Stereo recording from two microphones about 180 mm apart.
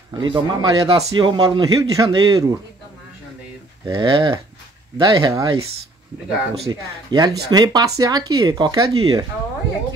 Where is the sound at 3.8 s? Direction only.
25° right (ahead or behind).